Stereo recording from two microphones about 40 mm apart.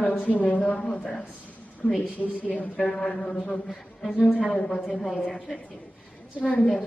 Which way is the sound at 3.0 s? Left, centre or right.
Left.